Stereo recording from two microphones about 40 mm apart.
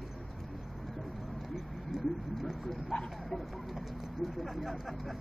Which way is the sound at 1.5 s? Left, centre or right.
Centre.